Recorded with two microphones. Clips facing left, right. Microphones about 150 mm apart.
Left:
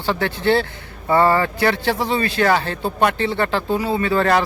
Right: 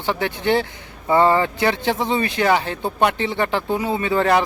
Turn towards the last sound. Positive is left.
turn(degrees=-15)  # may be behind; listen again after turning